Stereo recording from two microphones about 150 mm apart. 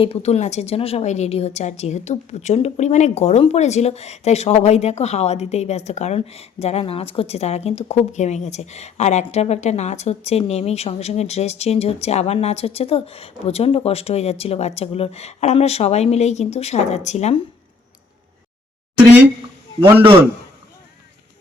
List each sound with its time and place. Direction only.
0.0 s a woman's voice: 45° left (ahead or behind)